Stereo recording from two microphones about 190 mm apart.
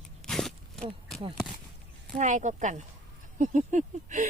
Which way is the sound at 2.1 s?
40° right (ahead or behind).